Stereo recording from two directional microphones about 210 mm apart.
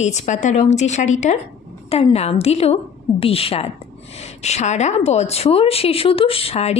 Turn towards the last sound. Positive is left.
turn(degrees=30)  # may be behind; listen again after turning